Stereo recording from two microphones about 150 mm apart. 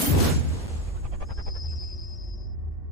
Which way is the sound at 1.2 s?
Centre (ahead or behind).